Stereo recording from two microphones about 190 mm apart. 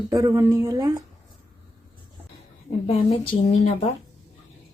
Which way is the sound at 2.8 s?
30° left (ahead or behind).